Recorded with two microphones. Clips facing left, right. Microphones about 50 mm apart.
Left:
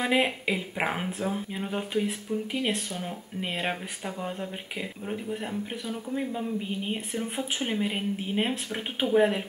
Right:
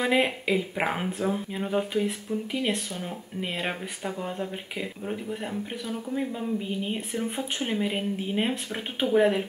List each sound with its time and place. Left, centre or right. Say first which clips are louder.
0.0 s speech: right 1 dB; centre